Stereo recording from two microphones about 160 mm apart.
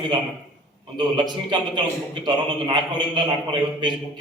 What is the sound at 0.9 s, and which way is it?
Speech, 30° right (ahead or behind).